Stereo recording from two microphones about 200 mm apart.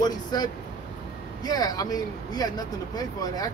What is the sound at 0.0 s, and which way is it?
Speech, 20° left (ahead or behind).